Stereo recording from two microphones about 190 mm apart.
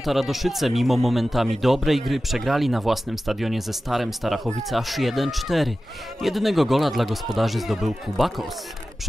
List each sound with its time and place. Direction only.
0.0 s speech: centre (ahead or behind)